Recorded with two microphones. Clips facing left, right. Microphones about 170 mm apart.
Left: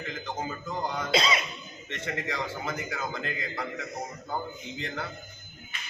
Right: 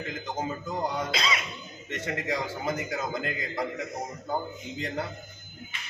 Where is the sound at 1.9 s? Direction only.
40° right (ahead or behind).